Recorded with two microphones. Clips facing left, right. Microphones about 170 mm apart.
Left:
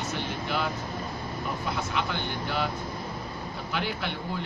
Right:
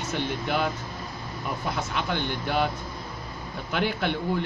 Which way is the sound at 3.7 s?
60° right (ahead or behind).